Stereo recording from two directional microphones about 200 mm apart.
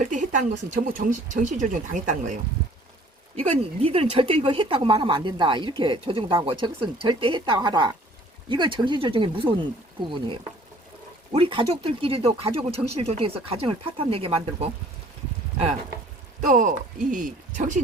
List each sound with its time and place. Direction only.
0.0 s speech: 40° right (ahead or behind)
16.5 s speech: 40° right (ahead or behind)